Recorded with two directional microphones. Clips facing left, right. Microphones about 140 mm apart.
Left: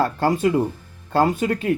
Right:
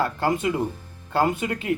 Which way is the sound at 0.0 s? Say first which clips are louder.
Left 4 dB; 35° left (ahead or behind).